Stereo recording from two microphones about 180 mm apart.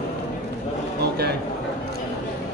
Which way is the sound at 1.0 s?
65° right (ahead or behind).